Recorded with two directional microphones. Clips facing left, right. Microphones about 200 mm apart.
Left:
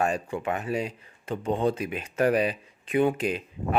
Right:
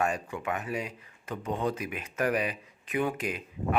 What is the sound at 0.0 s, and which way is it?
Speech, 30° left (ahead or behind).